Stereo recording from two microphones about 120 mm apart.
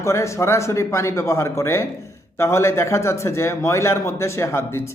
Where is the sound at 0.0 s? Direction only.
25° left (ahead or behind).